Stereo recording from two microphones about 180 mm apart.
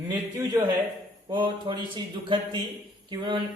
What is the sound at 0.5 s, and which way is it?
Speech, 20° right (ahead or behind).